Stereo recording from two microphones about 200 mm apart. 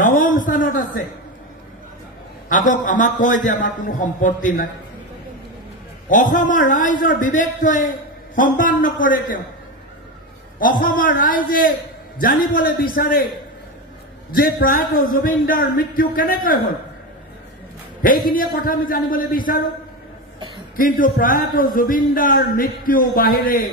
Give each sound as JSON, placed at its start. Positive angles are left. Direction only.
{"t": 0.2, "sound": "a sound", "side_deg": 40}
{"t": 2.5, "sound": "a man's voice", "side_deg": 40}
{"t": 6.0, "sound": "a man's voice", "side_deg": 40}
{"t": 10.6, "sound": "a man's voice", "side_deg": 45}
{"t": 14.3, "sound": "a man's voice", "side_deg": 45}
{"t": 18.0, "sound": "a man's voice", "side_deg": 45}
{"t": 20.7, "sound": "a man's voice", "side_deg": 45}